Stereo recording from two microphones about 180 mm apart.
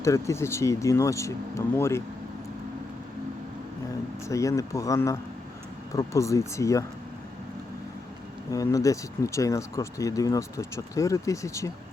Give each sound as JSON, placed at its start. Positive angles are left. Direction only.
{"t": 0.0, "sound": "speech", "side_deg": 15}
{"t": 4.3, "sound": "speech", "side_deg": 15}
{"t": 8.4, "sound": "speech", "side_deg": 20}